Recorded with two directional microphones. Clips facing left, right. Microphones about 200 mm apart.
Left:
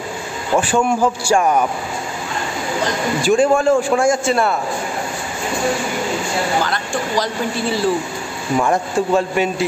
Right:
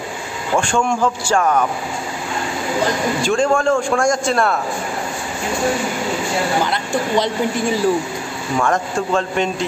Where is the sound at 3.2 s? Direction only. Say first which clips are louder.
Left 3 dB; 5° left (ahead or behind).